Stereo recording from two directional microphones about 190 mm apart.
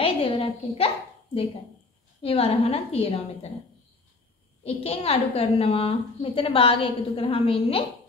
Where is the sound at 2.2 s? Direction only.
30° left (ahead or behind).